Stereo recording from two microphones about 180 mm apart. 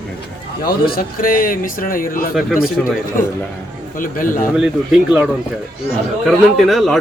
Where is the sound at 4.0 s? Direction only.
50° left (ahead or behind).